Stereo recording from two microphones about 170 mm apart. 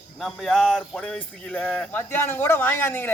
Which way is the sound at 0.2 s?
Centre (ahead or behind).